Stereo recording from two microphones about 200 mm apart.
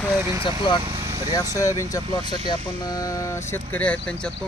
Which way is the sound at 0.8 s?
15° right (ahead or behind).